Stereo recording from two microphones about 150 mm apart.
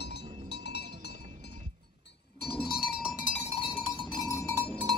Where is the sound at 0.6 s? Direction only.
90° left.